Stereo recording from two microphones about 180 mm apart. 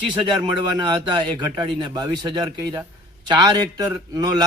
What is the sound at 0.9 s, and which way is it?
A man's voice, 25° right (ahead or behind).